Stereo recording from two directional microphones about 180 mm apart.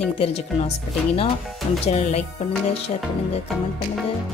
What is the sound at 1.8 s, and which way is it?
Chopping, 35° left (ahead or behind).